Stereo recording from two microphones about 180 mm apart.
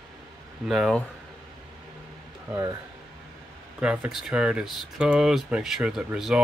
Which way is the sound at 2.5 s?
20° right (ahead or behind).